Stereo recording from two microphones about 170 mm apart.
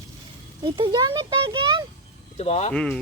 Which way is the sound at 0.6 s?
25° right (ahead or behind).